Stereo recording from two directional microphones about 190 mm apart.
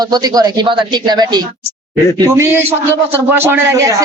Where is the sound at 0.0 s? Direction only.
20° right (ahead or behind).